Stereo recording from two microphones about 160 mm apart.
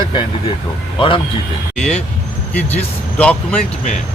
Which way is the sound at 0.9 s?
35° left (ahead or behind).